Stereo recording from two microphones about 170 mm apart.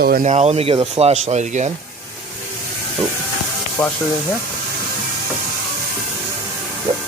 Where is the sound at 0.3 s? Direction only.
40° right (ahead or behind).